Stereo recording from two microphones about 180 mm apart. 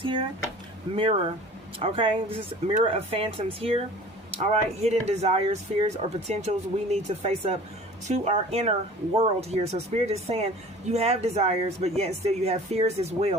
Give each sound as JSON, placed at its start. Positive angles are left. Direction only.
{"t": 0.0, "sound": "speech", "side_deg": -30}